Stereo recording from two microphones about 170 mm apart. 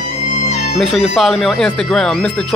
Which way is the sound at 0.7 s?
Centre (ahead or behind).